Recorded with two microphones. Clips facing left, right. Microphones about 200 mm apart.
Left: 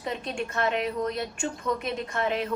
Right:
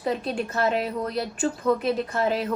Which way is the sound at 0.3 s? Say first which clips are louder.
Right 3 dB; 35° right (ahead or behind).